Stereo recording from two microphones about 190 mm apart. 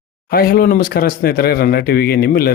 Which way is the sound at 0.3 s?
50° left (ahead or behind).